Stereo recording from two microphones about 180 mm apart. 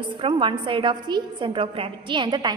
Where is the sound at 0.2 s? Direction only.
25° right (ahead or behind).